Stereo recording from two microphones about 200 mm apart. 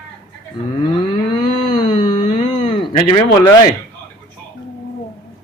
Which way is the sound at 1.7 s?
20° left (ahead or behind).